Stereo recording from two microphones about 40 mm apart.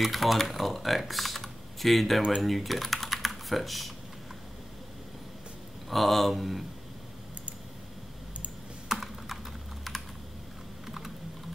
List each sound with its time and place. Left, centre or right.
0.0 s speech: centre
5.9 s speech: centre
8.9 s computer keyboard: centre